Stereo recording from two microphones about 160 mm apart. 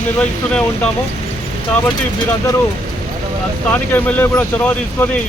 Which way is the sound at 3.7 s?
10° left (ahead or behind).